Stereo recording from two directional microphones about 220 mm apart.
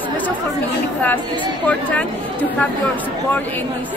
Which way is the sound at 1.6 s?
5° left (ahead or behind).